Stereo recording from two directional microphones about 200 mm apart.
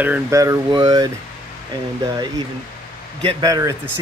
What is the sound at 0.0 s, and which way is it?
Speech, 10° right (ahead or behind).